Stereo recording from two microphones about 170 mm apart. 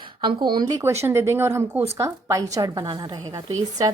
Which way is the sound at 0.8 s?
15° right (ahead or behind).